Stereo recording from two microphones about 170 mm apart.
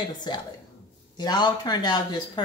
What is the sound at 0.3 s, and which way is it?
Speech, 25° left (ahead or behind).